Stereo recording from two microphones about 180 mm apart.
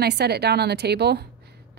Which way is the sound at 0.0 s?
65° right (ahead or behind).